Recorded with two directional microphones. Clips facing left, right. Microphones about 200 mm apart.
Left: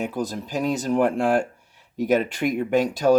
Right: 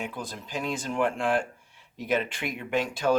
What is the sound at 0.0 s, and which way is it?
Speech, 40° left (ahead or behind).